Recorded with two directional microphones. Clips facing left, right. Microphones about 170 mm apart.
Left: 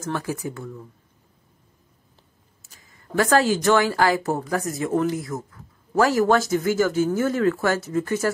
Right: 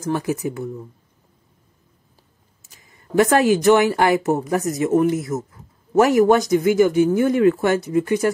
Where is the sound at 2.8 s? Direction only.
20° right (ahead or behind).